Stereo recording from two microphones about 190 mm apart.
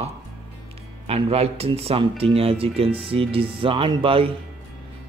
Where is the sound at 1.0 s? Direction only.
30° right (ahead or behind).